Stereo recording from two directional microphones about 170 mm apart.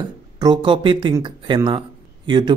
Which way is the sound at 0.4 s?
25° right (ahead or behind).